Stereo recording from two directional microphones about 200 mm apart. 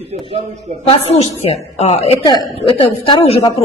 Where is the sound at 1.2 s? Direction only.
30° left (ahead or behind).